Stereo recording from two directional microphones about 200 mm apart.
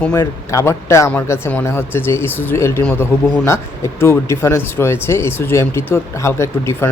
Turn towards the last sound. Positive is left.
turn(degrees=15)  # may be behind; listen again after turning